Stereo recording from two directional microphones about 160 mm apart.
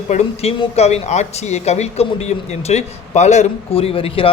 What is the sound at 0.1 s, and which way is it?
Speech, 45° left (ahead or behind).